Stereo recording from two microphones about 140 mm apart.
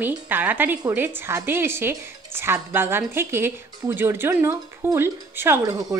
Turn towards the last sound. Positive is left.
turn(degrees=-20)  # may be behind; listen again after turning